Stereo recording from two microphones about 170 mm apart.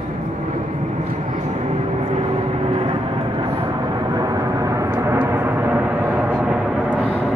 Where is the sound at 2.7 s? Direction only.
30° right (ahead or behind).